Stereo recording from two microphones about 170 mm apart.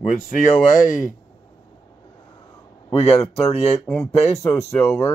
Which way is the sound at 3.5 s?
40° left (ahead or behind).